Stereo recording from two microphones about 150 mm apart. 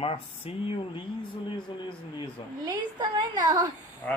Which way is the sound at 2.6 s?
30° right (ahead or behind).